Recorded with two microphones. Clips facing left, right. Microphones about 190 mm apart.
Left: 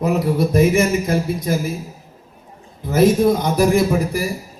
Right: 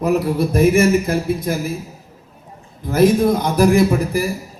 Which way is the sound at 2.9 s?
55° right (ahead or behind).